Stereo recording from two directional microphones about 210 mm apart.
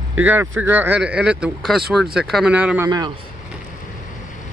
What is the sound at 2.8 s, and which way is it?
Speech, 20° right (ahead or behind).